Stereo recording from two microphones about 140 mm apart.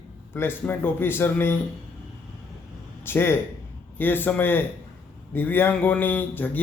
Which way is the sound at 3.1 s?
15° left (ahead or behind).